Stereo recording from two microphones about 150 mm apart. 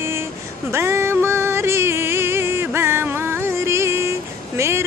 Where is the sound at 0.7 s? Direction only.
15° right (ahead or behind).